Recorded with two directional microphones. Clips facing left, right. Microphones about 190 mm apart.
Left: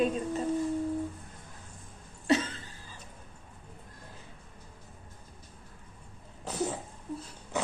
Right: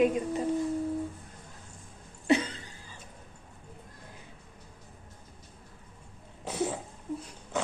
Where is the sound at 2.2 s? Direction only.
15° right (ahead or behind).